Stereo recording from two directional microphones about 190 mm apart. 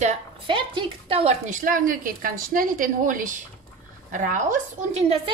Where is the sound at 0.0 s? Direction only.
30° right (ahead or behind).